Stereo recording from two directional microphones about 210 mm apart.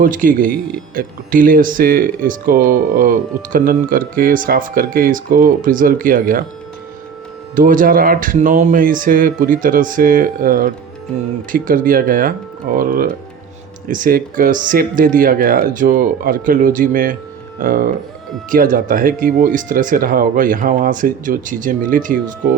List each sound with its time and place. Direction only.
0.0 s speech: 40° right (ahead or behind)
7.5 s speech: 40° right (ahead or behind)